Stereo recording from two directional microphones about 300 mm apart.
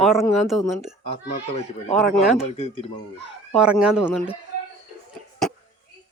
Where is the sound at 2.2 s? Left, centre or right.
Centre.